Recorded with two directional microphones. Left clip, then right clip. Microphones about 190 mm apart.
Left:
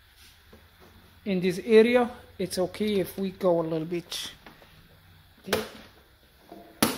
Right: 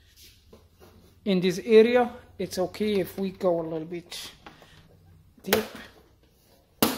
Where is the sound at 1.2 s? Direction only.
10° right (ahead or behind).